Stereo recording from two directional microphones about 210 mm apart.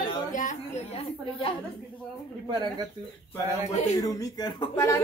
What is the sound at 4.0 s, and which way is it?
Speech, 15° left (ahead or behind).